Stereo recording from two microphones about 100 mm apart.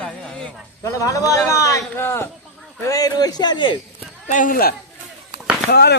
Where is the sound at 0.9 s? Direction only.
30° left (ahead or behind).